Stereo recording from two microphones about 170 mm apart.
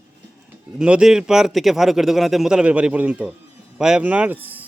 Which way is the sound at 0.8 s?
5° right (ahead or behind).